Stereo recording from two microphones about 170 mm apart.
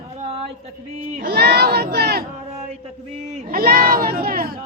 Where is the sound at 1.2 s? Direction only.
70° right (ahead or behind).